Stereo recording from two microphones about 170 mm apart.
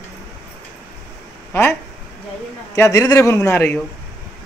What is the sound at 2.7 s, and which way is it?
A man's voice, 20° left (ahead or behind).